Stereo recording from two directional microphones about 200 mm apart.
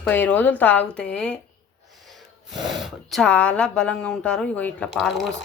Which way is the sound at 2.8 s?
Centre (ahead or behind).